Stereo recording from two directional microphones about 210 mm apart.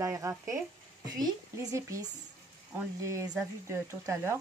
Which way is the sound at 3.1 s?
15° right (ahead or behind).